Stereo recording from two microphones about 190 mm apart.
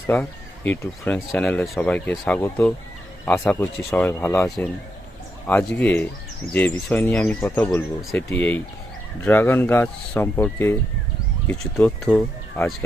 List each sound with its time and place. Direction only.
0.1 s speech: 10° left (ahead or behind)